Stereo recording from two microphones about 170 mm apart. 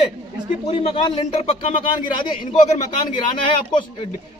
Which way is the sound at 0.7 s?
35° left (ahead or behind).